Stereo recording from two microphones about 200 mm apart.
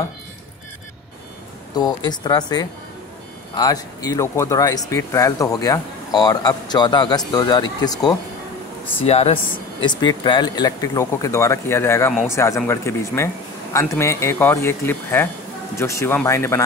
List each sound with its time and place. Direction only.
2.0 s speech: 20° left (ahead or behind)
9.0 s speech: 30° left (ahead or behind); by 16.6 s 15° left (ahead or behind)